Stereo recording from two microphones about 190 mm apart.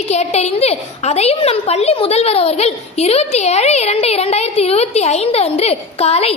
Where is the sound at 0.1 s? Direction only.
35° left (ahead or behind).